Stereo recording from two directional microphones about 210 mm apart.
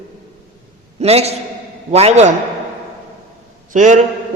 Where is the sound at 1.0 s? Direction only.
30° right (ahead or behind).